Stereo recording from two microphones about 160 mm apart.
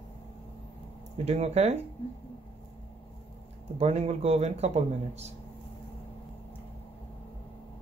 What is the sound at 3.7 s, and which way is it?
Speech, 40° right (ahead or behind).